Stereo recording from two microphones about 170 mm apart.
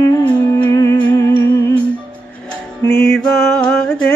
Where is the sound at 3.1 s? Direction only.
5° left (ahead or behind).